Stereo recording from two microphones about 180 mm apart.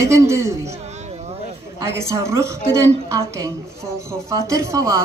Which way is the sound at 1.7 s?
15° right (ahead or behind).